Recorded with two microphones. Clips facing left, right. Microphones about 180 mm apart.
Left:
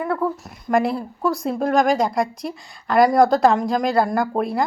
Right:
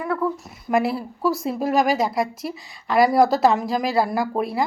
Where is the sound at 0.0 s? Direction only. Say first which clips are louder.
Left 2 dB; 25° left (ahead or behind).